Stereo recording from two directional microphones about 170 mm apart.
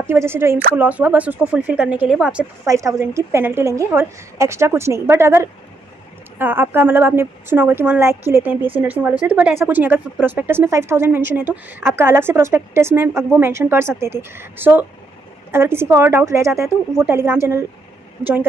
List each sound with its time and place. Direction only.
0.0 s speech: 15° right (ahead or behind)
2.6 s speech: 20° right (ahead or behind)